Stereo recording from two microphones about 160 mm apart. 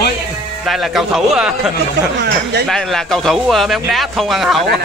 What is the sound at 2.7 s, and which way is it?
Speech, centre (ahead or behind).